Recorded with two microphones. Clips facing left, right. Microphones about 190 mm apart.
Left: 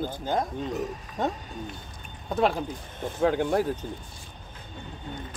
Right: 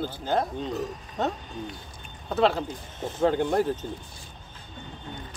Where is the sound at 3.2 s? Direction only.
10° left (ahead or behind).